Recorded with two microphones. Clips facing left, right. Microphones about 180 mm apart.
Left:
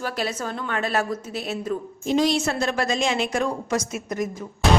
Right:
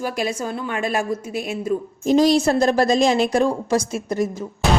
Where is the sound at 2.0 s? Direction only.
40° right (ahead or behind).